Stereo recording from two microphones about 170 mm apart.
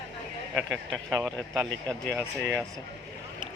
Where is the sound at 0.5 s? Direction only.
Centre (ahead or behind).